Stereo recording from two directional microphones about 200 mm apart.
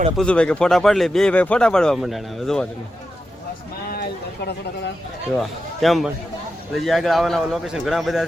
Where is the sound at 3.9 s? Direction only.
50° left (ahead or behind).